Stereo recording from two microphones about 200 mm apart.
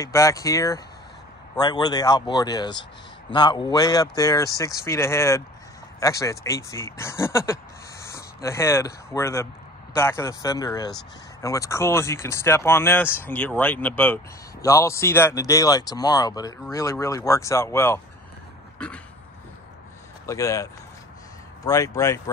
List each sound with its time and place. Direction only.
0.0 s speech: 15° left (ahead or behind)
20.2 s speech: 15° left (ahead or behind)